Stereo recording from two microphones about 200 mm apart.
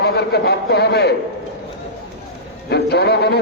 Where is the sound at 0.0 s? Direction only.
55° left (ahead or behind).